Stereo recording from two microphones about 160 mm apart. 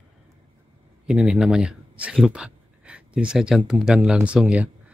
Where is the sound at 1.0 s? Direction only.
5° right (ahead or behind).